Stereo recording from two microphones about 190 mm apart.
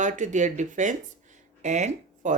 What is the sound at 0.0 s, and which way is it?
Speech, 40° right (ahead or behind).